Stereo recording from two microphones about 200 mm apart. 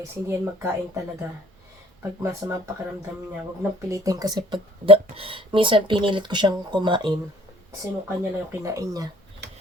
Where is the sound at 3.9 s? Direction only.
15° right (ahead or behind).